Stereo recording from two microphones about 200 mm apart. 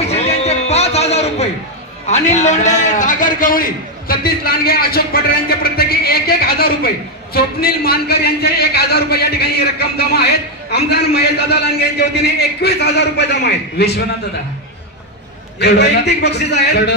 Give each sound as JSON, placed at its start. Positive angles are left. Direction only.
{"t": 0.1, "sound": "a sound", "side_deg": 30}
{"t": 2.0, "sound": "a man's voice", "side_deg": 35}
{"t": 15.6, "sound": "a man's voice", "side_deg": 55}